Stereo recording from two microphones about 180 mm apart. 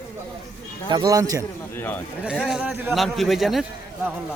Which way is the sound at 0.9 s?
20° right (ahead or behind).